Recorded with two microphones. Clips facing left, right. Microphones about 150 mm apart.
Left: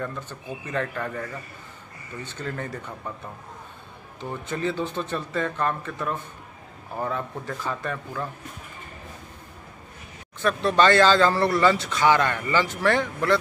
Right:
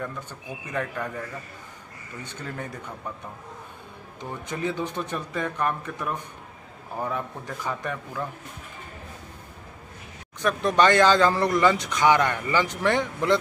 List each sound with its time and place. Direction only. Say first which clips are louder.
0.0 s speech: left 2 dB; 10° right (ahead or behind)
2.2 s speech: left 3 dB; 10° right (ahead or behind)
4.2 s speech: left 2 dB; 15° right (ahead or behind)
10.4 s speech: left 1 dB; 15° right (ahead or behind)